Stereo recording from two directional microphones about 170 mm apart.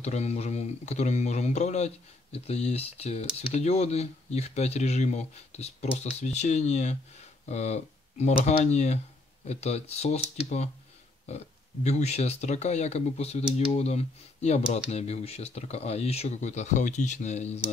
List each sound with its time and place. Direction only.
0.0 s speech: 40° left (ahead or behind)